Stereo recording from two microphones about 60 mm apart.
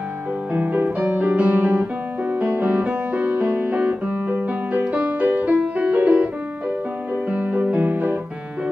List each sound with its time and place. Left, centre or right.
0.7 s music: right
7.2 s music: right